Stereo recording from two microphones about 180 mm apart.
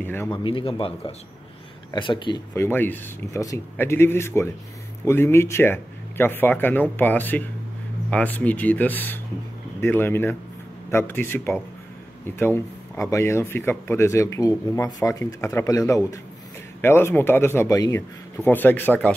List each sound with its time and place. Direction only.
0.0 s speech: 10° left (ahead or behind)
0.4 s speech: 30° left (ahead or behind)
2.5 s speech: 15° left (ahead or behind)